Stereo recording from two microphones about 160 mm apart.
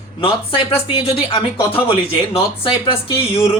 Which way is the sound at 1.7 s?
35° left (ahead or behind).